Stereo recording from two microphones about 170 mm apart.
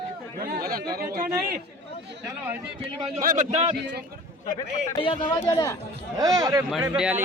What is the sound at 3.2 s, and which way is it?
Speech, 50° right (ahead or behind).